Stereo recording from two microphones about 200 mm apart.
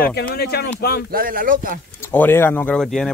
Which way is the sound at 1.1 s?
45° right (ahead or behind).